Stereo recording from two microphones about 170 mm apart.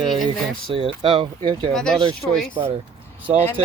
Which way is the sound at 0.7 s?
30° right (ahead or behind).